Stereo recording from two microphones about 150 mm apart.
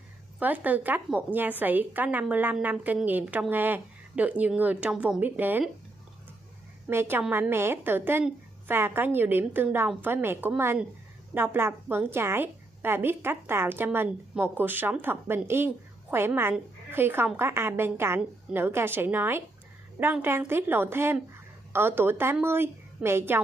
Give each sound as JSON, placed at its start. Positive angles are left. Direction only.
{"t": 0.4, "sound": "a woman's voice", "side_deg": -10}
{"t": 6.9, "sound": "a woman's voice", "side_deg": -15}